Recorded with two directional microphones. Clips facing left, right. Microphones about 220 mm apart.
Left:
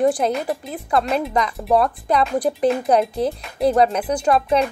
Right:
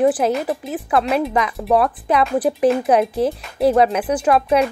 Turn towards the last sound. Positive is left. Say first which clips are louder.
# right 2 dB
turn(degrees=-5)  # may be behind; listen again after turning